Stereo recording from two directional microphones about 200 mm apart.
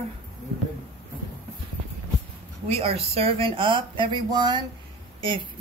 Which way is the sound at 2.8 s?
30° right (ahead or behind).